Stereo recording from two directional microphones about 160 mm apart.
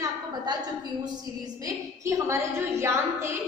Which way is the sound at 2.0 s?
20° right (ahead or behind).